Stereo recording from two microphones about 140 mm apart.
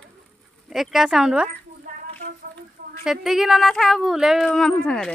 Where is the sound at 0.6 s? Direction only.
Centre (ahead or behind).